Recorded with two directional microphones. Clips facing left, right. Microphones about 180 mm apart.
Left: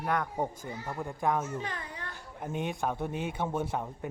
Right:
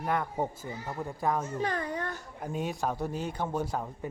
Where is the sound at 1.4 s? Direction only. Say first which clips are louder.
Right 5 dB; 40° right (ahead or behind).